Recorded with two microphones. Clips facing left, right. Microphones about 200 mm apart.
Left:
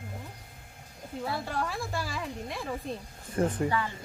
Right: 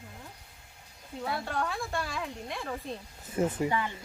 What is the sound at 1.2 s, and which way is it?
Speech, centre (ahead or behind).